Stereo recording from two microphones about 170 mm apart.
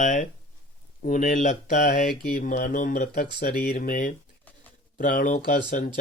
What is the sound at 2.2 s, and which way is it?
Speech, 60° left (ahead or behind).